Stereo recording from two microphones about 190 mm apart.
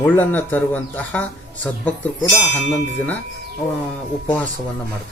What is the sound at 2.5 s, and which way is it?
Speech, centre (ahead or behind).